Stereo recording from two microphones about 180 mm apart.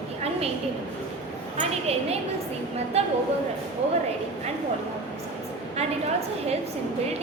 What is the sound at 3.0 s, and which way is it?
Speech, 35° right (ahead or behind).